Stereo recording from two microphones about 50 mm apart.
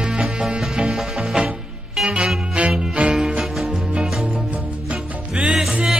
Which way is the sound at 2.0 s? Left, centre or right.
Centre.